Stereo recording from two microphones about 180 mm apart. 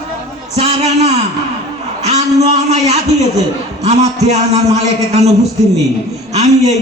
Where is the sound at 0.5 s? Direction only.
35° right (ahead or behind).